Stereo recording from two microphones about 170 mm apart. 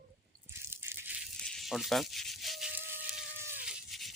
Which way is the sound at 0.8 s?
10° right (ahead or behind).